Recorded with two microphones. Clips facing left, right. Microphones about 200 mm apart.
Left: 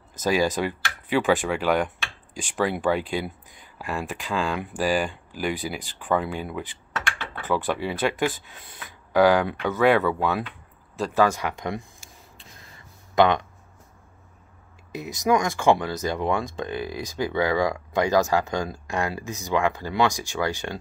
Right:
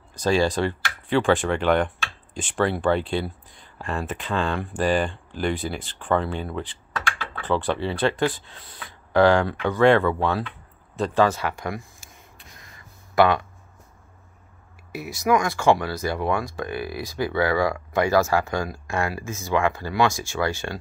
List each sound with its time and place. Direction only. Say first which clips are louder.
0.2 s speech: right 2 dB; 10° left (ahead or behind)
13.1 s speech: right 1 dB; 20° left (ahead or behind)
14.9 s speech: right 1 dB; 20° left (ahead or behind)